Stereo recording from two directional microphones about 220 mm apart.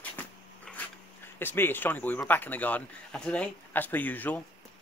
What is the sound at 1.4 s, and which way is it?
A man's voice, 10° left (ahead or behind).